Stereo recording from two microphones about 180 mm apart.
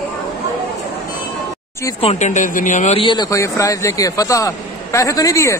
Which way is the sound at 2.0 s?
40° left (ahead or behind).